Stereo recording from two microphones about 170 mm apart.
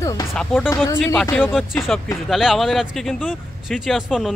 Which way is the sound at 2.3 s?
Centre (ahead or behind).